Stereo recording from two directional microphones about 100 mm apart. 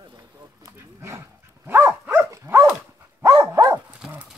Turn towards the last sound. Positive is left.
turn(degrees=-10)  # may be behind; listen again after turning